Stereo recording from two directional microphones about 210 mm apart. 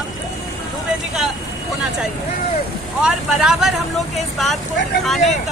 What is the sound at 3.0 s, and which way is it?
Speech, centre (ahead or behind).